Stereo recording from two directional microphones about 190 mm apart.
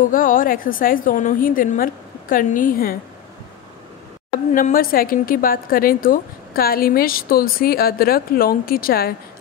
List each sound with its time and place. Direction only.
0.0 s a woman's voice: 45° left (ahead or behind)
4.6 s a woman's voice: 50° left (ahead or behind)